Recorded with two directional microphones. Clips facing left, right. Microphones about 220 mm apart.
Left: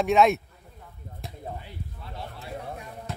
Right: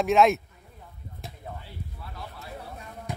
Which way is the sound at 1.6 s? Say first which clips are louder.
Left 1 dB; 25° left (ahead or behind).